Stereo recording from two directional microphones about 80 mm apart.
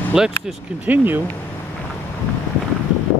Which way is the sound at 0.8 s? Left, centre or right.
Right.